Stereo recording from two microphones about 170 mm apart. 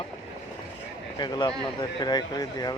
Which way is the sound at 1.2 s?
25° left (ahead or behind).